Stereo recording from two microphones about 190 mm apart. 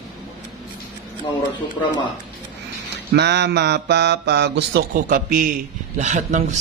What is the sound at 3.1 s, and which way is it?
Speech, 60° right (ahead or behind).